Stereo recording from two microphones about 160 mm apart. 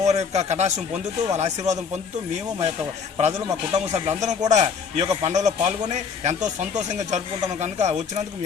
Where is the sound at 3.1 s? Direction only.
45° right (ahead or behind).